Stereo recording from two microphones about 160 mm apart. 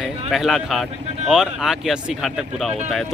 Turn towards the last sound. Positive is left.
turn(degrees=0)  # may be behind; listen again after turning